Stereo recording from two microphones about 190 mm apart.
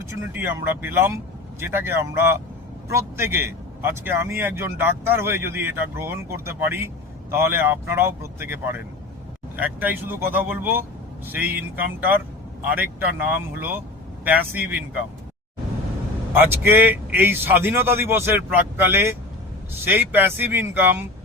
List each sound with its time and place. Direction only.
0.1 s speech: 10° right (ahead or behind)
16.3 s speech: 10° right (ahead or behind)